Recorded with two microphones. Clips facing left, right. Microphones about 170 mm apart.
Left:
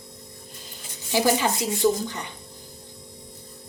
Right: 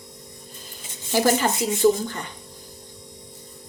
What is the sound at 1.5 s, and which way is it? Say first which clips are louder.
Speech: right 2 dB; 20° right (ahead or behind).